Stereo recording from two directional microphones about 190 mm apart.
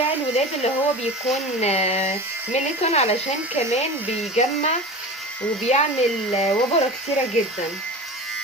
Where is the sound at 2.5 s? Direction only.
35° left (ahead or behind).